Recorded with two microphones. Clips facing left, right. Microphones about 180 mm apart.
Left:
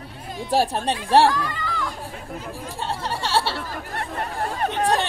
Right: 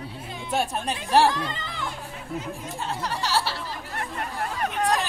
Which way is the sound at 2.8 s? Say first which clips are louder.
Left 2 dB; 30° left (ahead or behind).